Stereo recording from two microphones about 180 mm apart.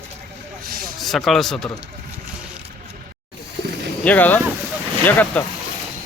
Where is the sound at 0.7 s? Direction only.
55° right (ahead or behind).